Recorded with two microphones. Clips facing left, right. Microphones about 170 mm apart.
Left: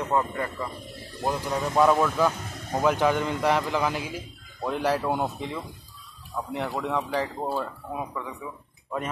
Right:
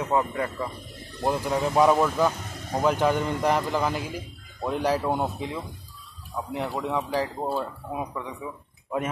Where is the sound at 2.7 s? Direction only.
5° left (ahead or behind).